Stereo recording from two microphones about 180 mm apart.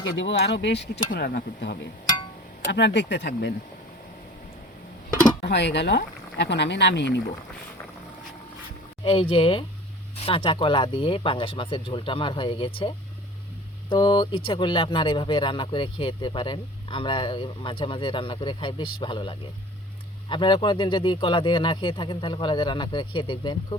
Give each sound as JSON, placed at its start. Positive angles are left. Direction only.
{"t": 0.0, "sound": "speech", "side_deg": 90}
{"t": 2.6, "sound": "speech", "side_deg": 75}
{"t": 5.4, "sound": "speech", "side_deg": 70}
{"t": 9.0, "sound": "speech", "side_deg": 30}
{"t": 13.9, "sound": "speech", "side_deg": 25}